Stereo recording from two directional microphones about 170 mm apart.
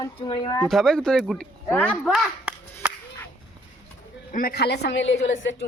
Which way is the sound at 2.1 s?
5° right (ahead or behind).